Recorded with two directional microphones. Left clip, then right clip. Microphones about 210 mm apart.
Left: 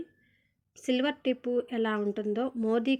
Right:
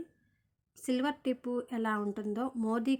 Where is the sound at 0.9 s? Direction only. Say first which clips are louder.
Left 4 dB; 10° right (ahead or behind).